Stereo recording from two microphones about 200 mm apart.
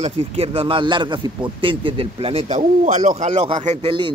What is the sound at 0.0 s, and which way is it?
Speech, 30° right (ahead or behind).